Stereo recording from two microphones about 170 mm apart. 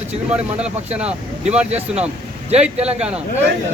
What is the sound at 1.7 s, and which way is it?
Speech, 40° right (ahead or behind).